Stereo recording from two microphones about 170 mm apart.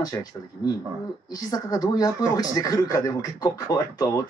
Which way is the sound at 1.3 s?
20° left (ahead or behind).